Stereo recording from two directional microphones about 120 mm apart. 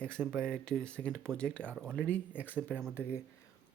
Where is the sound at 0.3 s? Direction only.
5° left (ahead or behind).